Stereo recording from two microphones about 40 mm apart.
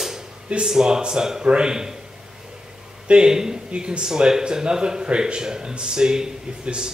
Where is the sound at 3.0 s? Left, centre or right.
Right.